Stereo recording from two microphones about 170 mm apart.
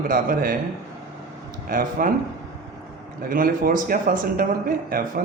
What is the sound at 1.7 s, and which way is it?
Speech, 55° right (ahead or behind).